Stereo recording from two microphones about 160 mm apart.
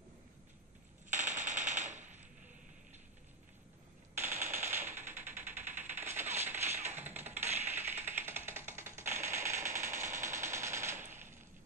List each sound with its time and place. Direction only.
1.1 s machine gun: 50° right (ahead or behind)
4.3 s machine gun: 50° right (ahead or behind)
4.6 s a sound: 15° right (ahead or behind)
6.9 s music: 15° right (ahead or behind)
7.2 s music: 45° right (ahead or behind)
7.5 s a sound: 10° right (ahead or behind)
10.2 s machine gun: 15° right (ahead or behind)